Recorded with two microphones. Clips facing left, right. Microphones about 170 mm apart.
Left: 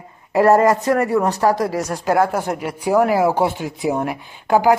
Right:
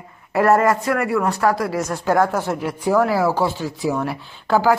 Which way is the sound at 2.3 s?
15° left (ahead or behind).